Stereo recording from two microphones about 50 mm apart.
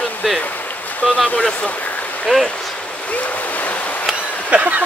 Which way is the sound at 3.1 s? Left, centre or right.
Left.